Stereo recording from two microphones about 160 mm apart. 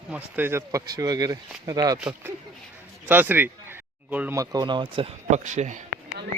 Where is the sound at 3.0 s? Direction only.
10° right (ahead or behind).